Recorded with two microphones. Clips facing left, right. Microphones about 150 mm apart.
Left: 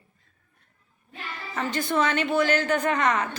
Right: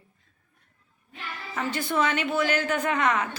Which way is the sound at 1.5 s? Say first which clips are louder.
Left 2 dB; 5° right (ahead or behind).